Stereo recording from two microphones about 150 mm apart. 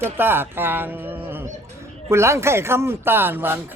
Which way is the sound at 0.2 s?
15° right (ahead or behind).